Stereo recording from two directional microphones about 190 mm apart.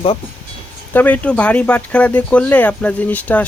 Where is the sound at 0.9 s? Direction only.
10° left (ahead or behind).